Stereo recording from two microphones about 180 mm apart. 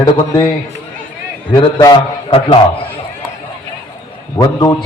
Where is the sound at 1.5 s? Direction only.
25° left (ahead or behind).